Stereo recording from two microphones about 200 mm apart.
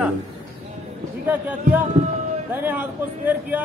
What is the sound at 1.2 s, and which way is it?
A man's voice, 10° right (ahead or behind).